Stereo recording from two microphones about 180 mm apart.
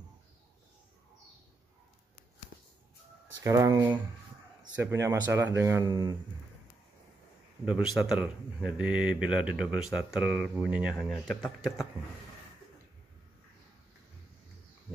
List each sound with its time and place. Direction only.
3.4 s speech: 15° right (ahead or behind)
7.6 s speech: centre (ahead or behind)